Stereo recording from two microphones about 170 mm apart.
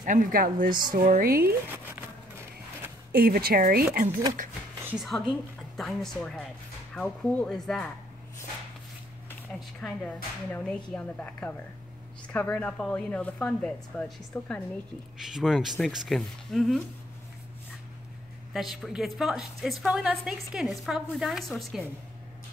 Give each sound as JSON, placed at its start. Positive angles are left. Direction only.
{"t": 0.0, "sound": "a woman's voice", "side_deg": -50}
{"t": 1.7, "sound": "a sound", "side_deg": -15}
{"t": 3.1, "sound": "speech", "side_deg": -65}
{"t": 4.9, "sound": "a woman's voice", "side_deg": 0}
{"t": 9.8, "sound": "a woman's voice", "side_deg": 5}
{"t": 18.5, "sound": "a woman's voice", "side_deg": 0}